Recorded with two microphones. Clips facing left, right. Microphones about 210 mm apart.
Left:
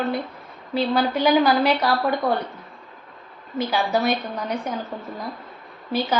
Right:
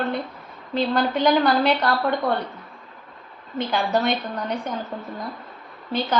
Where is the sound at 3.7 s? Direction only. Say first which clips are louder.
Even; 5° left (ahead or behind).